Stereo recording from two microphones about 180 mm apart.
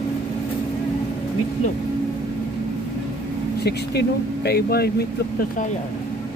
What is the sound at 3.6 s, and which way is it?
Speech, 65° left (ahead or behind).